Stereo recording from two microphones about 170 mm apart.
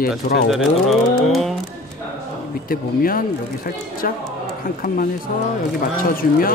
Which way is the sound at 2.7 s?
60° left (ahead or behind).